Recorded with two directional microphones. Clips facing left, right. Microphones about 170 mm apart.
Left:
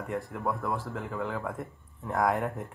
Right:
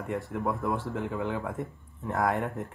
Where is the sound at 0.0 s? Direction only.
Centre (ahead or behind).